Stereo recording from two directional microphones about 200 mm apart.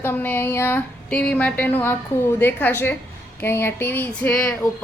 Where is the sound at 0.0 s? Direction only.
10° left (ahead or behind).